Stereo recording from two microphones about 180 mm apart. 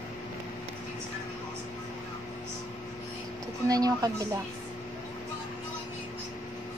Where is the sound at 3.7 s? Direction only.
20° right (ahead or behind).